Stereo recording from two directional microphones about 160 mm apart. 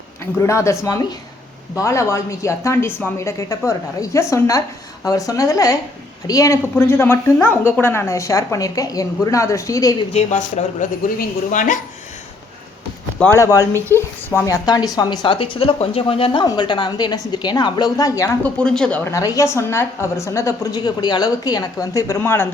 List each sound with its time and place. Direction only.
0.3 s a woman's voice: 20° left (ahead or behind)
10.1 s speech: 45° left (ahead or behind)
11.2 s speech: 55° left (ahead or behind)
13.1 s a woman's voice: 15° left (ahead or behind)
18.4 s speech: 5° left (ahead or behind)
19.1 s a woman's voice: 20° left (ahead or behind)